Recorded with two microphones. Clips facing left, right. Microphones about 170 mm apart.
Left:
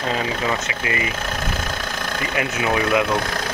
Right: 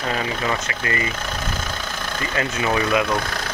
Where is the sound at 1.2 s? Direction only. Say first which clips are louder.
Left 2 dB; 5° left (ahead or behind).